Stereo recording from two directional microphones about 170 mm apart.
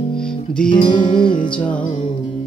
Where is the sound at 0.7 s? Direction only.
25° left (ahead or behind).